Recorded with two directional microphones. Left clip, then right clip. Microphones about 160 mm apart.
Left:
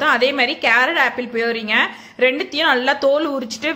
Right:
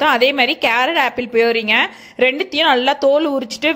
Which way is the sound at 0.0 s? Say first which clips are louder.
Right 2 dB; 40° right (ahead or behind).